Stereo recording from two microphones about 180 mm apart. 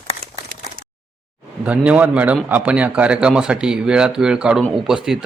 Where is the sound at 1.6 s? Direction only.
10° right (ahead or behind).